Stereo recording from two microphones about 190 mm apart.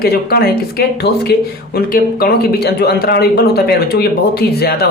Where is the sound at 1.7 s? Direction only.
55° left (ahead or behind).